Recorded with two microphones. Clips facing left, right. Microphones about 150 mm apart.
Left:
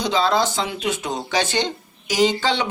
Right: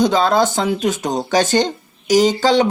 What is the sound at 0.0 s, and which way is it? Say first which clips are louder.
Speech: right 5 dB; 50° right (ahead or behind).